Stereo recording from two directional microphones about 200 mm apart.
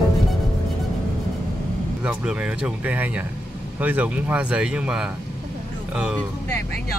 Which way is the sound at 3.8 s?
5° right (ahead or behind).